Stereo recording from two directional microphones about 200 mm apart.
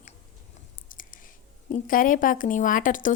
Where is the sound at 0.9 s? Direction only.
45° left (ahead or behind).